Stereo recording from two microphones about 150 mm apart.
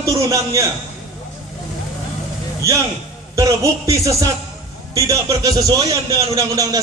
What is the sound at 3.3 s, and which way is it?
A man's voice, 20° right (ahead or behind).